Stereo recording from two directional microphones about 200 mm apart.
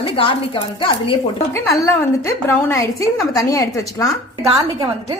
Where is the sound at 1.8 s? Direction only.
15° left (ahead or behind).